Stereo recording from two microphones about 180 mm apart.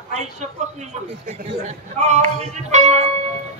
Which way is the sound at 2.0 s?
40° right (ahead or behind).